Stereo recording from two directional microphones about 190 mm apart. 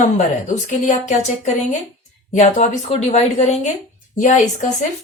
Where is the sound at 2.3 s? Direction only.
35° left (ahead or behind).